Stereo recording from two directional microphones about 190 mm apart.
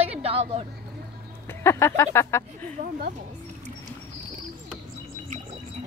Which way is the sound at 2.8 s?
45° right (ahead or behind).